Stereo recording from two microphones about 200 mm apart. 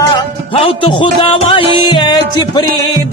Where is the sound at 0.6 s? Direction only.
25° left (ahead or behind).